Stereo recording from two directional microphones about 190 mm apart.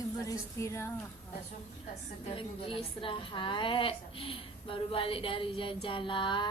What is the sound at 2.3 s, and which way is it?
A woman's voice, 30° left (ahead or behind).